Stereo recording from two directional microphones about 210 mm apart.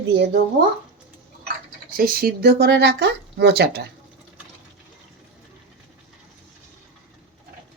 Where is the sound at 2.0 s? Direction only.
45° right (ahead or behind).